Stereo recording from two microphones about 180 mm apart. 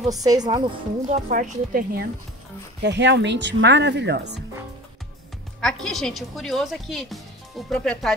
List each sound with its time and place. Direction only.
0.1 s a woman's voice: 20° right (ahead or behind)
1.0 s a woman's voice: 45° right (ahead or behind)
2.8 s speech: 75° right (ahead or behind)
5.6 s a woman's voice: 5° left (ahead or behind)